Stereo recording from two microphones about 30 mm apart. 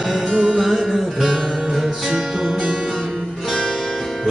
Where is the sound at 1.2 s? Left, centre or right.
Centre.